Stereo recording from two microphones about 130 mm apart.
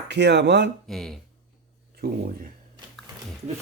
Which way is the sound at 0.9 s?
5° left (ahead or behind).